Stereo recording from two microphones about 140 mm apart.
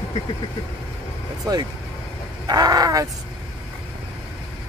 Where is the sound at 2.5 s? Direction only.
25° right (ahead or behind).